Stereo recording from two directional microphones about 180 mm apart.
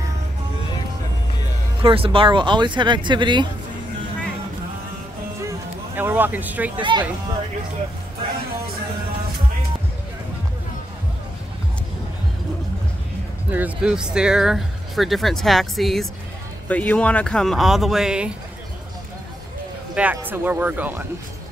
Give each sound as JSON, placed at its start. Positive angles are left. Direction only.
{"t": 1.8, "sound": "speech", "side_deg": -30}
{"t": 5.5, "sound": "music", "side_deg": -10}
{"t": 6.8, "sound": "speech", "side_deg": -25}
{"t": 13.5, "sound": "speech", "side_deg": -10}
{"t": 19.9, "sound": "speech", "side_deg": -10}